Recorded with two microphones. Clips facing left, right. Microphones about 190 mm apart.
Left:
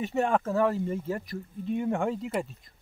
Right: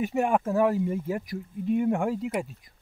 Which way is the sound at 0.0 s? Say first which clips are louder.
Right 2 dB; 10° right (ahead or behind).